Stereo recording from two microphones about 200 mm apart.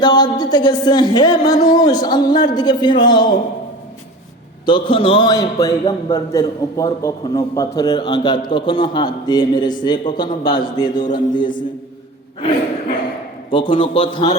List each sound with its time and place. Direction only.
0.0 s a man's voice: 20° left (ahead or behind)
4.6 s a man's voice: 25° left (ahead or behind)
13.5 s a man's voice: 25° left (ahead or behind)